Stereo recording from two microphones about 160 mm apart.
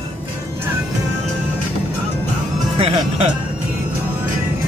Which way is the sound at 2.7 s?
40° right (ahead or behind).